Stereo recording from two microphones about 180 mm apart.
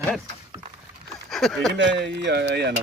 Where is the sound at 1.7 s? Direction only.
80° right.